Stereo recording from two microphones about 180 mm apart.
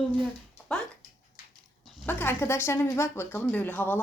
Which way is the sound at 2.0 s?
10° left (ahead or behind).